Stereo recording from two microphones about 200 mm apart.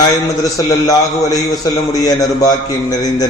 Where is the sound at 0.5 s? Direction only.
15° left (ahead or behind).